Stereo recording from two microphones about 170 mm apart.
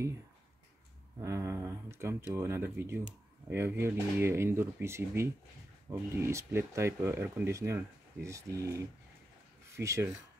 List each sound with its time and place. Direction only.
1.2 s speech: 20° right (ahead or behind)